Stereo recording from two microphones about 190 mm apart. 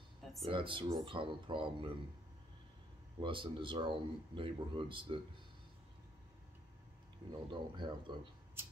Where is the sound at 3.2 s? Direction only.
25° right (ahead or behind).